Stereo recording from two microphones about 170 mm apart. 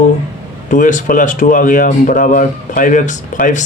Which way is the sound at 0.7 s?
50° left (ahead or behind).